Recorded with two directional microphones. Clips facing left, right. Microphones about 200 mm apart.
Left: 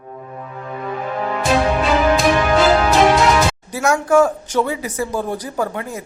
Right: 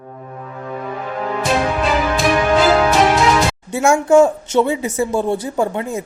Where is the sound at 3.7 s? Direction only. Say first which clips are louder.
Right 3 dB; 25° right (ahead or behind).